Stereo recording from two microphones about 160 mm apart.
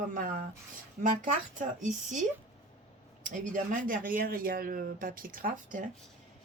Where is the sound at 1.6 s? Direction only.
50° right (ahead or behind).